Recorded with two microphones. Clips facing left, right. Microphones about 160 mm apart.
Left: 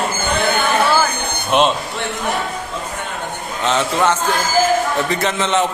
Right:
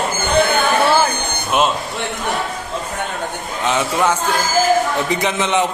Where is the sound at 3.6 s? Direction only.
10° right (ahead or behind).